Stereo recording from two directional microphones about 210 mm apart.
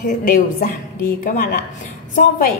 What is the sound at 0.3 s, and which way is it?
A woman's voice, 40° left (ahead or behind).